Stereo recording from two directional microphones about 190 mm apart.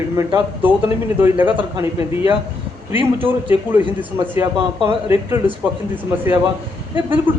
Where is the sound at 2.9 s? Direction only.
10° right (ahead or behind).